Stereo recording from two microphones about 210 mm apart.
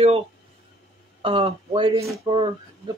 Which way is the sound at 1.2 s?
25° right (ahead or behind).